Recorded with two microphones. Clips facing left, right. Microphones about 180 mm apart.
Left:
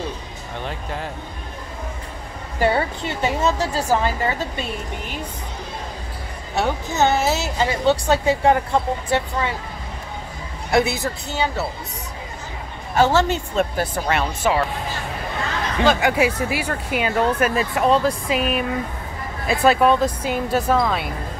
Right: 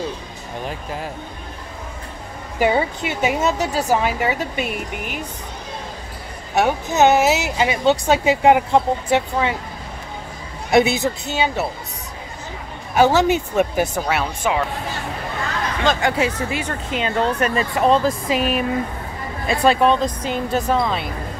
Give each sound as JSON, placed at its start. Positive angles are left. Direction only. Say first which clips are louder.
{"t": 2.6, "sound": "speech", "louder": "right 2 dB", "side_deg": -15}
{"t": 6.6, "sound": "speech", "louder": "right 4 dB", "side_deg": -20}
{"t": 10.7, "sound": "a woman's voice", "louder": "right 4 dB", "side_deg": -20}
{"t": 12.9, "sound": "speech", "louder": "right 2 dB", "side_deg": -15}
{"t": 15.8, "sound": "speech", "louder": "left 2 dB", "side_deg": 10}